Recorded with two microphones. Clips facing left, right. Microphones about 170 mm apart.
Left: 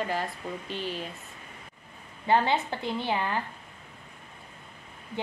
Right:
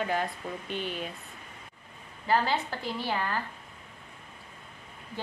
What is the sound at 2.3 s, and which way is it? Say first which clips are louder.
A woman's voice: left 3 dB; 25° left (ahead or behind).